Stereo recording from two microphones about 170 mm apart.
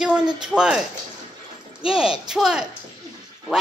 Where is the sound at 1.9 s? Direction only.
5° right (ahead or behind).